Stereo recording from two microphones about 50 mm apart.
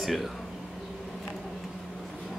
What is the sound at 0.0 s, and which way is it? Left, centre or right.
Speech, centre.